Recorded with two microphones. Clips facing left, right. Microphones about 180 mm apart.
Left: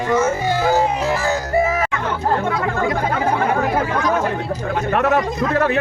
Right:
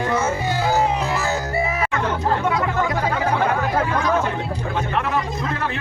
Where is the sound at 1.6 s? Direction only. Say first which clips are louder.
Left 7 dB; 45° left (ahead or behind).